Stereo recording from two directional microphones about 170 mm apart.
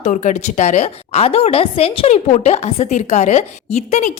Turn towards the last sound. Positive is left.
turn(degrees=40)  # may be behind; listen again after turning